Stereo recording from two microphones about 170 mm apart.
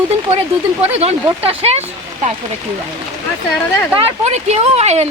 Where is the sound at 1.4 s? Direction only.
35° right (ahead or behind).